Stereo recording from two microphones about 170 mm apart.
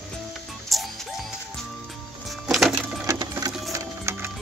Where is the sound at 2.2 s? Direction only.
Centre (ahead or behind).